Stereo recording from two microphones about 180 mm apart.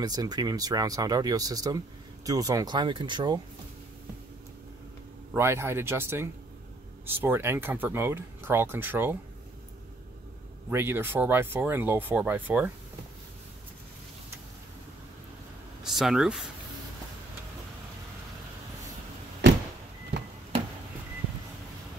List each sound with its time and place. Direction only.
0.0 s speech: 20° right (ahead or behind)
5.3 s speech: 15° right (ahead or behind)
10.7 s speech: 15° right (ahead or behind)
15.8 s speech: centre (ahead or behind)